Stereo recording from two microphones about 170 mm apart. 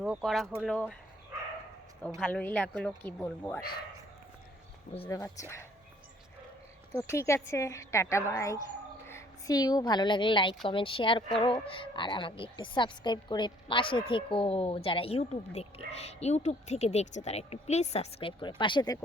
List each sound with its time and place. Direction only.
0.0 s speech: centre (ahead or behind)
2.0 s speech: 5° left (ahead or behind)
5.0 s speech: 20° left (ahead or behind)
6.9 s a woman's voice: 15° left (ahead or behind)